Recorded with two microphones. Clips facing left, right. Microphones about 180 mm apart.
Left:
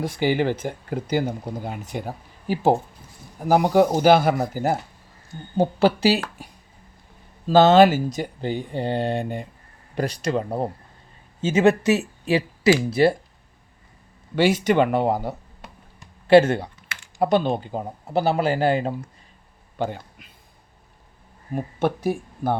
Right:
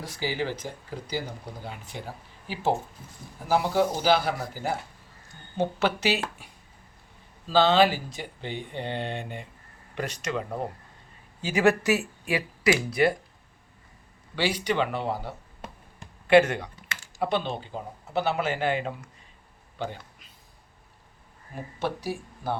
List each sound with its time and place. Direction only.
0.0 s speech: 55° left (ahead or behind)
5.5 s speech: 35° left (ahead or behind)
6.4 s a sound: 40° left (ahead or behind)
7.4 s speech: 45° left (ahead or behind)
11.3 s speech: 25° left (ahead or behind)
14.3 s speech: 45° left (ahead or behind)
16.2 s speech: 30° left (ahead or behind)
17.2 s speech: 40° left (ahead or behind)
18.0 s speech: 35° left (ahead or behind)
19.8 s speech: 50° left (ahead or behind)
21.5 s speech: 55° left (ahead or behind)